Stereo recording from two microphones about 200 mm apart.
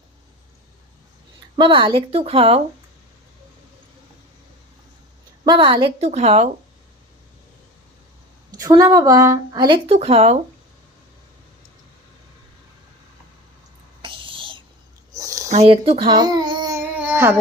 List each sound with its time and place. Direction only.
1.5 s speech: 25° right (ahead or behind)
5.5 s speech: 25° right (ahead or behind)
8.5 s speech: 15° right (ahead or behind)
14.0 s a sound: 25° right (ahead or behind)
15.4 s a child's voice: 30° right (ahead or behind)
17.0 s a sound: 10° right (ahead or behind)